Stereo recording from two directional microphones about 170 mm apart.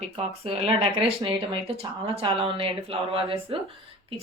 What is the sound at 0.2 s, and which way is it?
A woman's voice, 35° right (ahead or behind).